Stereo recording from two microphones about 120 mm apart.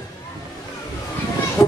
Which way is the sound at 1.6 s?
30° left (ahead or behind).